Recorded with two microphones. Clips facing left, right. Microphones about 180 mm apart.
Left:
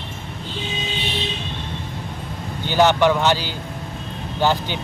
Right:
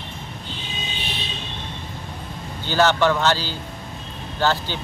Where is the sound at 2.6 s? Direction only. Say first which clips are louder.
Left 2 dB; 15° left (ahead or behind).